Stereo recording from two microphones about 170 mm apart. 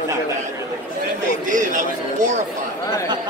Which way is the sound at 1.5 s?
50° right (ahead or behind).